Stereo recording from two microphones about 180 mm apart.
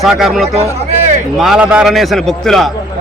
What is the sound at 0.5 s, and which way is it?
Speech, 35° right (ahead or behind).